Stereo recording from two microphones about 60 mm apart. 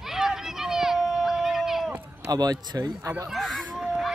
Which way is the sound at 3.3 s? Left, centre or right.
Centre.